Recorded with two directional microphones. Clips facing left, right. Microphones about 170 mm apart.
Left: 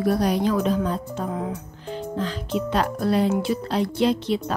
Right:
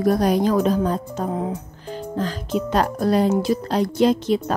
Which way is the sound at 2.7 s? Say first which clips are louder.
Right 3 dB; 45° right (ahead or behind).